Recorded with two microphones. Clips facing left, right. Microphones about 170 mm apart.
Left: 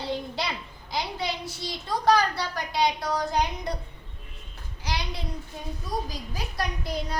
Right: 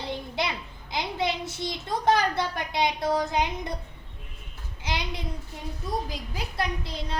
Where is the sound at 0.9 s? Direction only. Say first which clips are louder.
Right 2 dB; 20° right (ahead or behind).